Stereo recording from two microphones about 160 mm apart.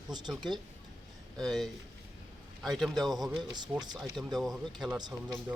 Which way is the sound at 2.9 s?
25° right (ahead or behind).